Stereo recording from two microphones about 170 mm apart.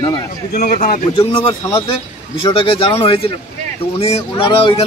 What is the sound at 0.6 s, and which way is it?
Speech, 45° left (ahead or behind).